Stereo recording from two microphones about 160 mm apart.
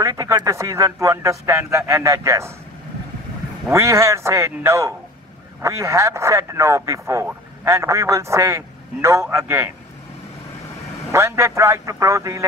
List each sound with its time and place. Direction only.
0.0 s speech: 20° right (ahead or behind)
3.7 s a man's voice: 15° right (ahead or behind)
11.1 s speech: 15° right (ahead or behind)